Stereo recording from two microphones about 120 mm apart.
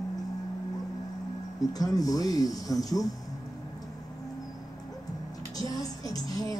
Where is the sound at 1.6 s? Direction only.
30° left (ahead or behind).